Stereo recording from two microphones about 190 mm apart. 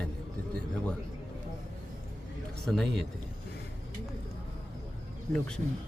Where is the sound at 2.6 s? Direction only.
Centre (ahead or behind).